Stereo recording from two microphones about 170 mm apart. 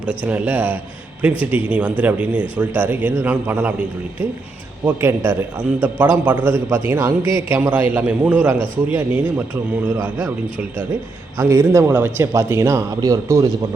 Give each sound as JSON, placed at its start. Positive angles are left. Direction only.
{"t": 0.0, "sound": "speech", "side_deg": -5}
{"t": 4.9, "sound": "speech", "side_deg": -15}
{"t": 11.3, "sound": "speech", "side_deg": -15}